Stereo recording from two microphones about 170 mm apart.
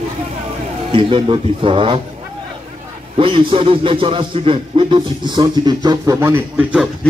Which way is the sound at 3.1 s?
30° right (ahead or behind).